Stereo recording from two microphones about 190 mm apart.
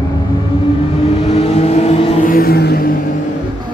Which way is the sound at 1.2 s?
35° left (ahead or behind).